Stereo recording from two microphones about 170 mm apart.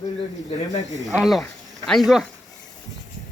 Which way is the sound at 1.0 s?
Centre (ahead or behind).